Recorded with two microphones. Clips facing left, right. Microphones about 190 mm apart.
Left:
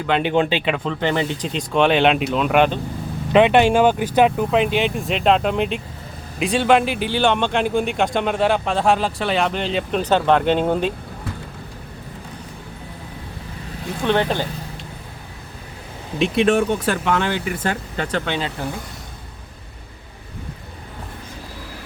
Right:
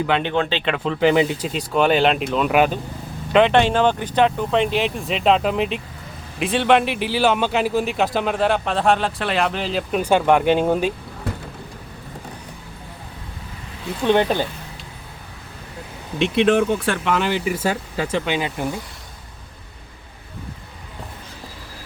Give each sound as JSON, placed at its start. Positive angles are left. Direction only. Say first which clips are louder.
{"t": 0.1, "sound": "speech", "louder": "left 7 dB", "side_deg": 10}
{"t": 3.3, "sound": "speech", "louder": "left 2 dB", "side_deg": 10}
{"t": 14.1, "sound": "speech", "louder": "right 2 dB", "side_deg": -15}
{"t": 16.1, "sound": "speech", "louder": "even", "side_deg": 0}